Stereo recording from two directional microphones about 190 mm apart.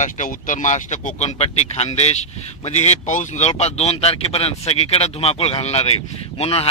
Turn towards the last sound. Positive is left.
turn(degrees=30)  # may be behind; listen again after turning